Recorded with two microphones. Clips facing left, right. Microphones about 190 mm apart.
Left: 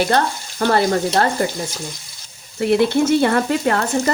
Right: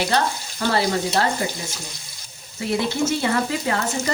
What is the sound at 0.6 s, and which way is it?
Speech, 55° left (ahead or behind).